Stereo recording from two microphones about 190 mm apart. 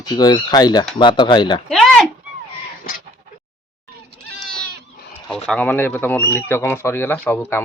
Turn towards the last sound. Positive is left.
turn(degrees=10)  # may be behind; listen again after turning